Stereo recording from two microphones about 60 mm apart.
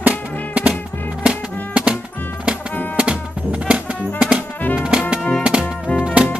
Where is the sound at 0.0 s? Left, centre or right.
Right.